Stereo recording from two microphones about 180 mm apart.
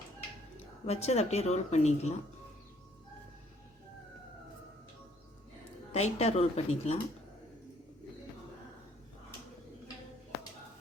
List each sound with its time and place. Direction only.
0.9 s speech: 35° left (ahead or behind)
5.9 s speech: 35° left (ahead or behind)